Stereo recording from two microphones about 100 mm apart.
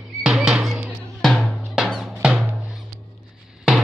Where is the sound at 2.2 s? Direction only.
5° right (ahead or behind).